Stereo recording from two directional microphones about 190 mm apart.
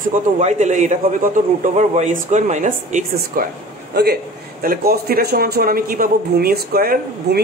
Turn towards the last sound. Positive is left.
turn(degrees=-55)  # may be behind; listen again after turning